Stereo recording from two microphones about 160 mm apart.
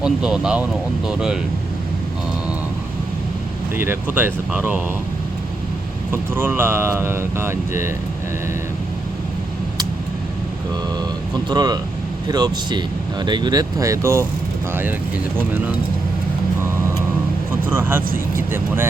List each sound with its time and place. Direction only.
0.0 s speech: 5° right (ahead or behind)
3.8 s speech: 10° right (ahead or behind)
6.1 s speech: 15° right (ahead or behind)
11.4 s speech: 25° right (ahead or behind)
17.7 s speech: 15° right (ahead or behind)